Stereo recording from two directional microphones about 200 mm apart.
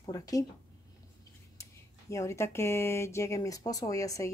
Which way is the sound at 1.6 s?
15° left (ahead or behind).